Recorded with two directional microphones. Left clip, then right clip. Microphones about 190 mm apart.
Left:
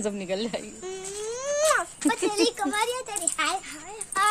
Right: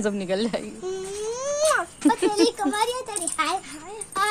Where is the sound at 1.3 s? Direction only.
10° right (ahead or behind).